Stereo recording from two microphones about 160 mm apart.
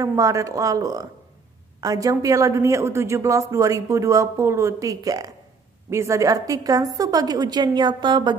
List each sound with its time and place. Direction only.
0.0 s a man's voice: 20° right (ahead or behind)